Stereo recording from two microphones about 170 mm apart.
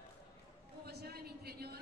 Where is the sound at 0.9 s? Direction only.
70° right (ahead or behind).